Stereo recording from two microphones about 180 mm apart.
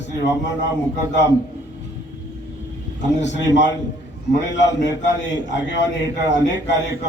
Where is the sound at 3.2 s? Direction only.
80° left.